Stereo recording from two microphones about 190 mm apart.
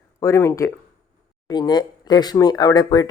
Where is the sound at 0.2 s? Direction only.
15° left (ahead or behind).